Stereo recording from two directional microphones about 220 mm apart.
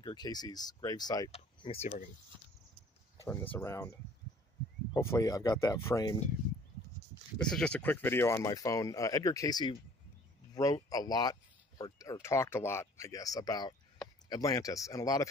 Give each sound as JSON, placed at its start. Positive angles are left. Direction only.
{"t": 0.0, "sound": "speech", "side_deg": 20}
{"t": 3.3, "sound": "speech", "side_deg": 10}
{"t": 4.9, "sound": "speech", "side_deg": 15}
{"t": 7.3, "sound": "speech", "side_deg": 5}